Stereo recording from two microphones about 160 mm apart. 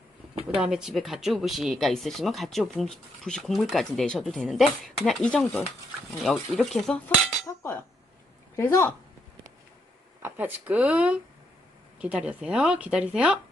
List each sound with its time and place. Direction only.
0.5 s speech: 5° right (ahead or behind)
7.4 s chink: 15° left (ahead or behind)
8.5 s a woman's voice: 15° left (ahead or behind)
10.2 s speech: 10° right (ahead or behind)